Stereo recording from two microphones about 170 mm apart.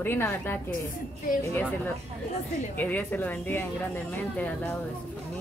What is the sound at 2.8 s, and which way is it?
Speech, 10° left (ahead or behind).